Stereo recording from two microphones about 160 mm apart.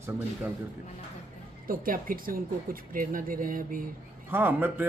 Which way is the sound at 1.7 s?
60° right (ahead or behind).